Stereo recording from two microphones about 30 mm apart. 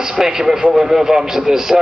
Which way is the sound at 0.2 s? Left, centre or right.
Centre.